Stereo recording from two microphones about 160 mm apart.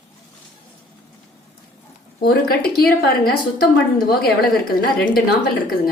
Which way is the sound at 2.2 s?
70° left (ahead or behind).